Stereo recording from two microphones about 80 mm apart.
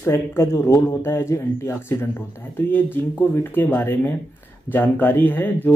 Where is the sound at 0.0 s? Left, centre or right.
Left.